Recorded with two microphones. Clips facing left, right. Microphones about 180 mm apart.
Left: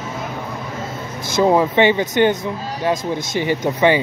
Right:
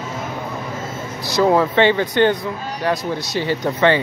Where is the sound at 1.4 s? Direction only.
15° left (ahead or behind).